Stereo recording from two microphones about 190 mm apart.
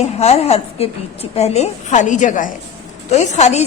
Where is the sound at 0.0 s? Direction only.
35° left (ahead or behind).